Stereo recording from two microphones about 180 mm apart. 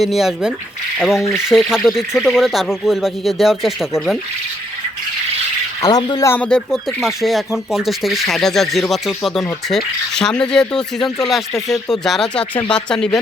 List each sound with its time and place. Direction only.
0.0 s speech: centre (ahead or behind)
5.8 s speech: 25° left (ahead or behind)
6.2 s speech: 10° left (ahead or behind)